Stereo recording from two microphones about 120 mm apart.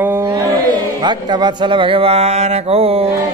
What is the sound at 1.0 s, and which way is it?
Speech, 35° right (ahead or behind).